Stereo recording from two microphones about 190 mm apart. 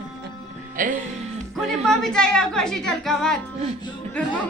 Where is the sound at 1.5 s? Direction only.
5° left (ahead or behind).